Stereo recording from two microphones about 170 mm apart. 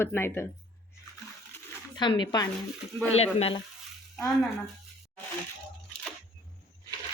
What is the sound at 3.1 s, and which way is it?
Speech, 40° left (ahead or behind).